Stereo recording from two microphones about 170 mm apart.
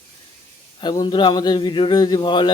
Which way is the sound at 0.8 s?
25° left (ahead or behind).